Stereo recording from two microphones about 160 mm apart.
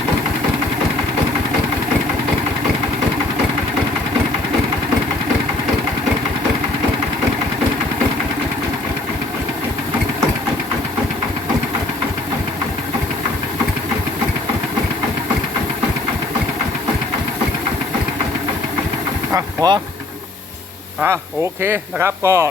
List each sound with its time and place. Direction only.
19.3 s vehicle: 25° right (ahead or behind)
21.6 s speech: 15° right (ahead or behind)